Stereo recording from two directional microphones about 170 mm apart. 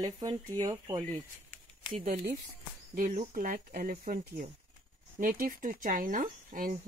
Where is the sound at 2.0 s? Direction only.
55° right (ahead or behind).